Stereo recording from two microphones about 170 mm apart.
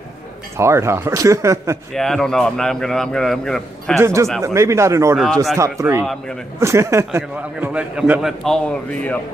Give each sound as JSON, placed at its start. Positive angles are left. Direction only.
{"t": 0.6, "sound": "a man's voice", "side_deg": -15}
{"t": 2.0, "sound": "speech", "side_deg": 0}
{"t": 4.0, "sound": "a man's voice", "side_deg": -15}
{"t": 5.1, "sound": "speech", "side_deg": 0}
{"t": 5.6, "sound": "a man's voice", "side_deg": -15}